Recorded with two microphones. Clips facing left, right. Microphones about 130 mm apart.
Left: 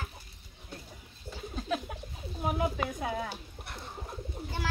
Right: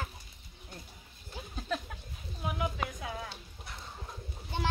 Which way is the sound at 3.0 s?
65° left (ahead or behind).